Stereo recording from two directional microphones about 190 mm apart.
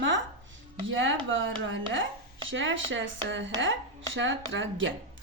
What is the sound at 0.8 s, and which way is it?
Speech, 85° right.